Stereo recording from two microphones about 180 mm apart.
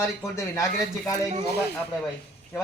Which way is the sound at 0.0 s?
15° left (ahead or behind).